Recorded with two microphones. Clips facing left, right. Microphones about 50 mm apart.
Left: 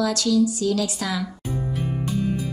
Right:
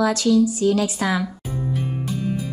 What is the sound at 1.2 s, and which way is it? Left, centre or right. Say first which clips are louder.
Music: right 1 dB; centre.